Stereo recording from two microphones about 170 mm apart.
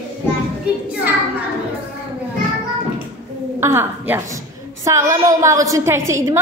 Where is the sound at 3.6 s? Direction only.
15° right (ahead or behind).